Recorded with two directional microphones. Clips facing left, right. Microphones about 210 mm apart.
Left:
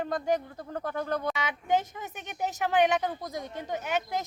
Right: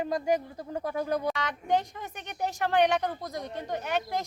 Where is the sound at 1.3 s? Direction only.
5° left (ahead or behind).